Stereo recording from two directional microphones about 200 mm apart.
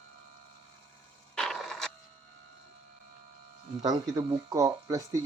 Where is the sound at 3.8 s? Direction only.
20° right (ahead or behind).